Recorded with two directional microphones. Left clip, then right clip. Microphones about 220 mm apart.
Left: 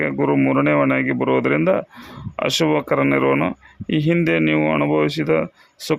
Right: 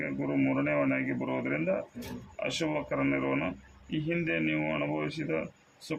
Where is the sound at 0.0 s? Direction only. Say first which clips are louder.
Left 13 dB; 55° left (ahead or behind).